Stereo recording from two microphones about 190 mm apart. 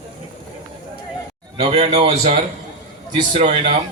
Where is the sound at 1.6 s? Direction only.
30° right (ahead or behind).